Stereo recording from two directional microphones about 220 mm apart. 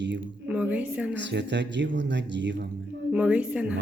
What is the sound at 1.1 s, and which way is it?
Speech, 55° right (ahead or behind).